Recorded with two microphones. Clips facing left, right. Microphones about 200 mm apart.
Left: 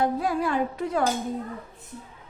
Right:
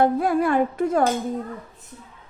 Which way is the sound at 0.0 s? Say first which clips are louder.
Right 5 dB; 55° right (ahead or behind).